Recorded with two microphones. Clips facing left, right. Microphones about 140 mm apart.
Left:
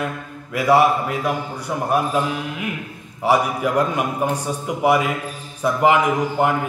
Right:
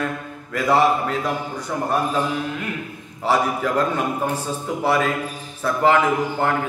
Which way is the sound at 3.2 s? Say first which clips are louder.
Left 2 dB; 15° left (ahead or behind).